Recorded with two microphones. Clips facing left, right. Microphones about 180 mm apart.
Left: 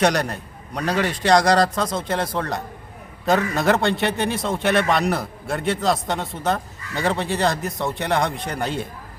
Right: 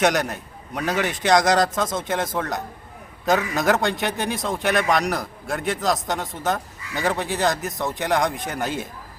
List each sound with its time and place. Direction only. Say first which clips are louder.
0.0 s a man's voice: left 1 dB; centre (ahead or behind)